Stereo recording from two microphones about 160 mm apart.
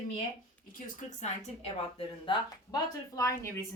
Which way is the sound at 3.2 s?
20° left (ahead or behind).